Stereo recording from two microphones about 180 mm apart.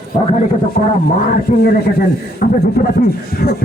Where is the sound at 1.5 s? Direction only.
45° left (ahead or behind).